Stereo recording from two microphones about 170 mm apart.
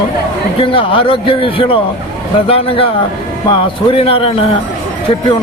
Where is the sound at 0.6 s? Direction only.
30° left (ahead or behind).